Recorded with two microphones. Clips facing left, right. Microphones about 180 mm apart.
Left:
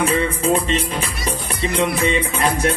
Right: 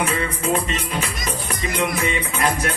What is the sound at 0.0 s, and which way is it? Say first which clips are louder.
Music: left 4 dB; 30° left (ahead or behind).